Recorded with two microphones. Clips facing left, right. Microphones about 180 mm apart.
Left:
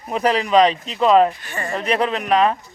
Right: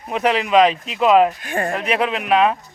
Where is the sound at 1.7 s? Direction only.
5° right (ahead or behind).